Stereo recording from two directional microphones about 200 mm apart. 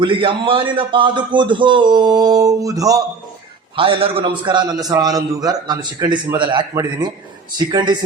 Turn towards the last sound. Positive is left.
turn(degrees=-20)  # may be behind; listen again after turning